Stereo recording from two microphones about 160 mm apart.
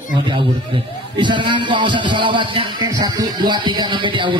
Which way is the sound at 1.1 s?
30° right (ahead or behind).